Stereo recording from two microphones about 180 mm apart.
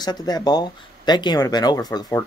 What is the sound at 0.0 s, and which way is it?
Speech, 20° left (ahead or behind).